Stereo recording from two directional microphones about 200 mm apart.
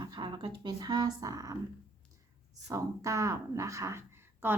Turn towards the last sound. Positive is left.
turn(degrees=-10)  # may be behind; listen again after turning